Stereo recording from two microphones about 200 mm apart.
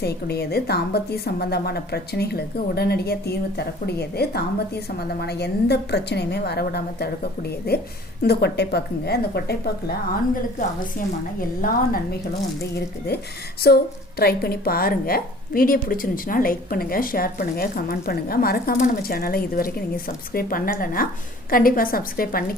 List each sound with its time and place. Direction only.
0.0 s a woman's voice: 55° left (ahead or behind)
13.6 s a woman's voice: 50° left (ahead or behind)